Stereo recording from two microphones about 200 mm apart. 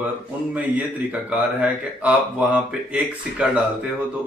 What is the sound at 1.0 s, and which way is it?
Speech, 5° right (ahead or behind).